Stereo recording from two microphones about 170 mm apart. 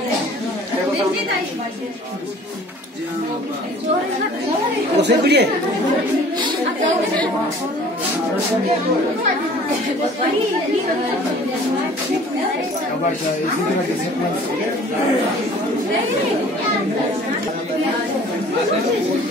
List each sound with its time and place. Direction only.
5.0 s speech: 75° right (ahead or behind)